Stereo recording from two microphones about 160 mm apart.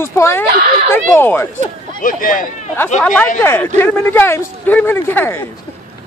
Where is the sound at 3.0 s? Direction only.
5° left (ahead or behind).